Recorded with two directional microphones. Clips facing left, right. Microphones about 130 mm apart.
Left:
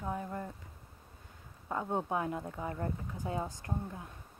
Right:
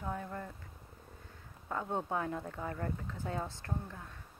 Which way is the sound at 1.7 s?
15° left (ahead or behind).